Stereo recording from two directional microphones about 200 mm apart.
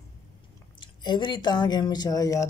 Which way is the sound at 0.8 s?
25° left (ahead or behind).